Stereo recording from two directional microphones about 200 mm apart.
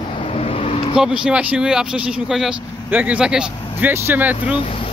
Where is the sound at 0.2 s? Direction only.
30° left (ahead or behind).